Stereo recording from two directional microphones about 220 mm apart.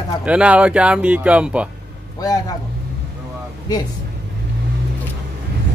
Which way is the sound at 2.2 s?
15° left (ahead or behind).